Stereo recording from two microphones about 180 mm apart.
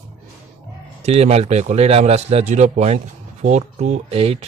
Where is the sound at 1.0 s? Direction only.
35° right (ahead or behind).